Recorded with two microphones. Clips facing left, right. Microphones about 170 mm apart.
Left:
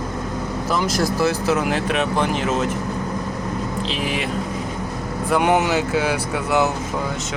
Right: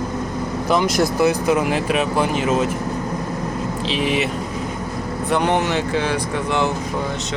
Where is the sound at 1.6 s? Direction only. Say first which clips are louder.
Right 1 dB; 5° right (ahead or behind).